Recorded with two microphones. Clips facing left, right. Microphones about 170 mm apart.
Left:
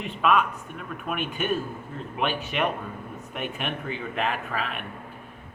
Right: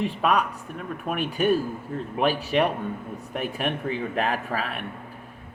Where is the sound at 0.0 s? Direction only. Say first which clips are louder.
Even; 35° right (ahead or behind).